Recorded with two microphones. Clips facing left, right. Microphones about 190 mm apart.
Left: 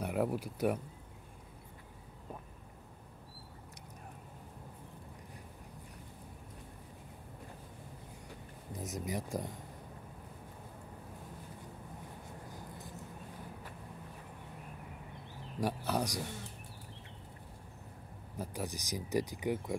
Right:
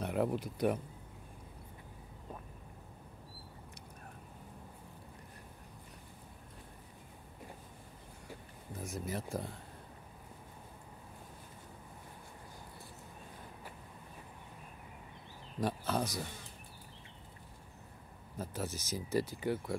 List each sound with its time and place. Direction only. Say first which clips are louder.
0.0 s speech: even; 5° left (ahead or behind)
8.7 s speech: left 1 dB; 20° left (ahead or behind)
15.6 s speech: even; 15° left (ahead or behind)
18.4 s speech: even; 15° left (ahead or behind)